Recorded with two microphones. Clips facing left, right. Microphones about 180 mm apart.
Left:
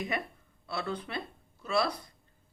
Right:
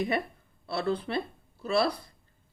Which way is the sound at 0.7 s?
35° right (ahead or behind).